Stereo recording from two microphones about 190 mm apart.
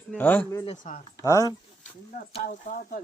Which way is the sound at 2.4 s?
45° left (ahead or behind).